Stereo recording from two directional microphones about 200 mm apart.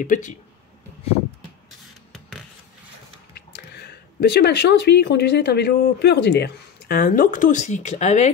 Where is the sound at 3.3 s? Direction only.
55° left (ahead or behind).